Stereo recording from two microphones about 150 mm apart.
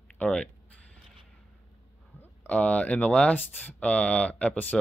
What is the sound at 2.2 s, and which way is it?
Speech, 10° left (ahead or behind).